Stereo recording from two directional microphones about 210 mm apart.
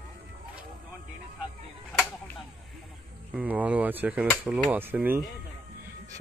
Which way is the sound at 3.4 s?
5° right (ahead or behind).